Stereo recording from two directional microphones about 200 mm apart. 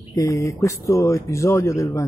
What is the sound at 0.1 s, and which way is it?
Speech, 15° left (ahead or behind).